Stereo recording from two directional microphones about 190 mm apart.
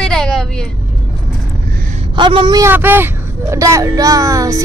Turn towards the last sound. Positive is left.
turn(degrees=-15)  # may be behind; listen again after turning